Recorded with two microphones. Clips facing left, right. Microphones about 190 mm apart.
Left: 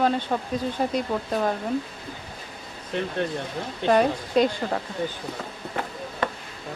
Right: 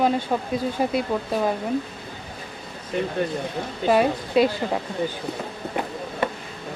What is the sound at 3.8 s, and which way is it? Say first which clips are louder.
Speech: right 1 dB; 5° right (ahead or behind).